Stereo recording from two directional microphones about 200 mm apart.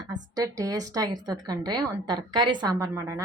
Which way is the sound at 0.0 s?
20° right (ahead or behind).